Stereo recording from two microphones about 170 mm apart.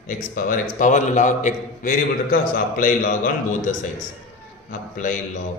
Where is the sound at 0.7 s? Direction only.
45° left (ahead or behind).